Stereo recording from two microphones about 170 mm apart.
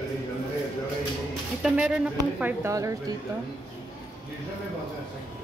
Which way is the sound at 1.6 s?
5° right (ahead or behind).